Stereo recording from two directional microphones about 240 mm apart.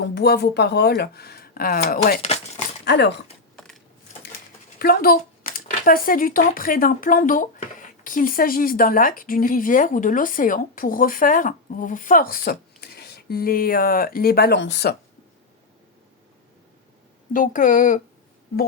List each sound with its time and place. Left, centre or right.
0.0 s speech: left
2.8 s speech: left
4.8 s speech: left
17.3 s speech: left